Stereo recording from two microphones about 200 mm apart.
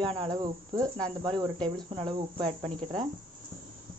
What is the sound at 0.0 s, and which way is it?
Speech, 25° right (ahead or behind).